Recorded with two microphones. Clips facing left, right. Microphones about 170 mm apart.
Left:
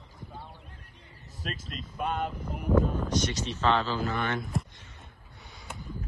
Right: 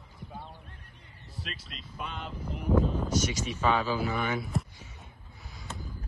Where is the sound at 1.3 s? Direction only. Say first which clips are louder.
Left 5 dB; 45° left (ahead or behind).